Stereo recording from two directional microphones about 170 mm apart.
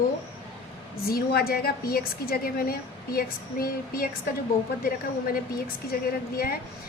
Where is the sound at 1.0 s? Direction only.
65° left (ahead or behind).